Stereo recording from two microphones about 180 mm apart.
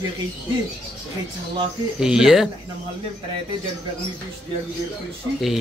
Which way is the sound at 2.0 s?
5° right (ahead or behind).